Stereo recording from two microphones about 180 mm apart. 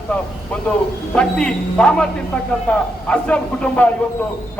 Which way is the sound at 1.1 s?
5° left (ahead or behind).